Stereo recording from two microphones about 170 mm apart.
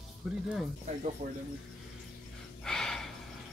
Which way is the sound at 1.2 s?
45° right (ahead or behind).